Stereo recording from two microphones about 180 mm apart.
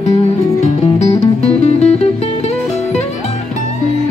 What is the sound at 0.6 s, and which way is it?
Music, 40° left (ahead or behind).